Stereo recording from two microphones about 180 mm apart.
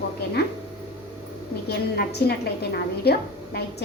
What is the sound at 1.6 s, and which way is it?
A woman's voice, 60° left (ahead or behind).